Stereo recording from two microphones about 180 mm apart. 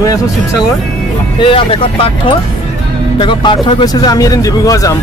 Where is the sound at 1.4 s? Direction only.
30° left (ahead or behind).